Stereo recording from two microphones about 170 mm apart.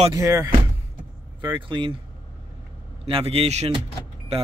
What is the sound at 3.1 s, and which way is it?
Speech, 35° right (ahead or behind).